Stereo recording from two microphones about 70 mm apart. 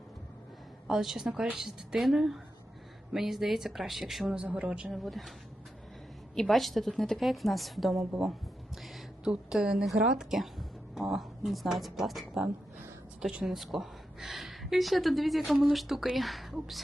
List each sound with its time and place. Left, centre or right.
0.9 s a woman's voice: centre
4.4 s speech: centre
4.9 s a woman's voice: centre
6.3 s a woman's voice: centre
8.8 s a sound: centre
9.3 s speech: centre
13.4 s a woman's voice: centre